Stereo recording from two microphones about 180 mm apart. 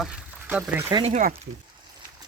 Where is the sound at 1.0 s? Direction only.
45° right (ahead or behind).